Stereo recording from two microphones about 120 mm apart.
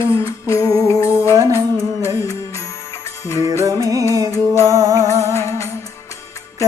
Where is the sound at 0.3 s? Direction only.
25° left (ahead or behind).